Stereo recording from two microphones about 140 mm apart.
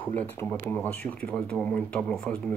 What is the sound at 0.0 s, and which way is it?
Speech, 10° left (ahead or behind).